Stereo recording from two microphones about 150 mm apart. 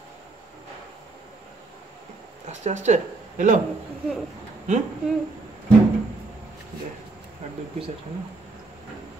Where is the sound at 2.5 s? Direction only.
50° right (ahead or behind).